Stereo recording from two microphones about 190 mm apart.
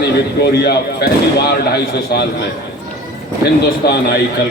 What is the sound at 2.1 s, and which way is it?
Speech, 55° left (ahead or behind).